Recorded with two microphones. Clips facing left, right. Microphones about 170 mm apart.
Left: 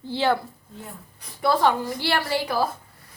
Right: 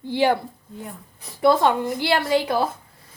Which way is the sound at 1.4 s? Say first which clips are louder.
Right 3 dB; 20° right (ahead or behind).